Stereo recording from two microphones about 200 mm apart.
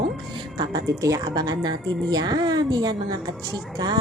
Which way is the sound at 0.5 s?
20° right (ahead or behind).